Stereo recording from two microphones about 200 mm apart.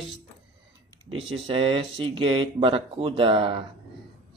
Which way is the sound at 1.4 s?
25° right (ahead or behind).